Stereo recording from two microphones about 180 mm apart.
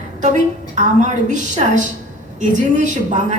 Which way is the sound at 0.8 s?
45° right (ahead or behind).